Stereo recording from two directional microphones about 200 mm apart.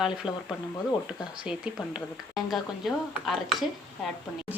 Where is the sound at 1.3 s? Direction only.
5° right (ahead or behind).